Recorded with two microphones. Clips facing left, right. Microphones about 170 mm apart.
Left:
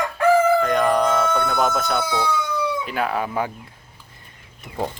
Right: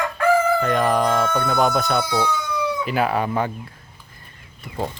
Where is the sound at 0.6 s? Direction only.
Centre (ahead or behind).